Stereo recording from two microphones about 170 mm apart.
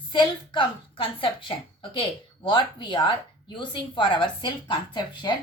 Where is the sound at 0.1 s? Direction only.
30° left (ahead or behind).